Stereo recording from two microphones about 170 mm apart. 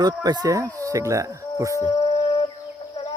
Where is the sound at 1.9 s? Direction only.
35° left (ahead or behind).